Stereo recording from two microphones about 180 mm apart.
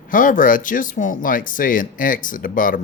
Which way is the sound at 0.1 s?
50° left (ahead or behind).